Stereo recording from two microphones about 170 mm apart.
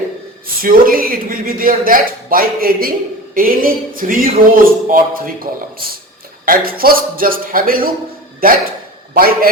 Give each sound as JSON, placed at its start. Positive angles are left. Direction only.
{"t": 0.6, "sound": "speech", "side_deg": -55}